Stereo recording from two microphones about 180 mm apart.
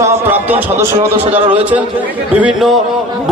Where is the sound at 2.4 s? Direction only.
5° right (ahead or behind).